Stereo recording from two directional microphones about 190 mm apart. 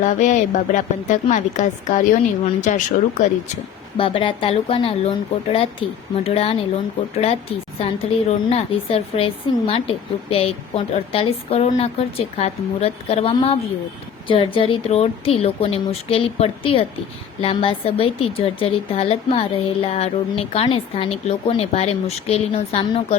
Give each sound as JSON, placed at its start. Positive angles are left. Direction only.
{"t": 0.0, "sound": "a woman's voice", "side_deg": 40}
{"t": 3.9, "sound": "a woman's voice", "side_deg": 30}
{"t": 7.8, "sound": "a woman's voice", "side_deg": 30}